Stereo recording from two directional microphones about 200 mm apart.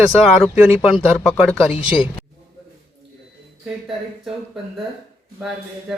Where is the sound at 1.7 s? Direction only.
25° left (ahead or behind).